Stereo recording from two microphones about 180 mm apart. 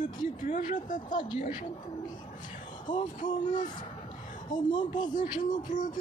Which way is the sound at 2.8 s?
25° left (ahead or behind).